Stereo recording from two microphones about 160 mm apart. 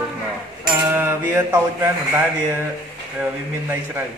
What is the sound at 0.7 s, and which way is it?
Speech, 10° right (ahead or behind).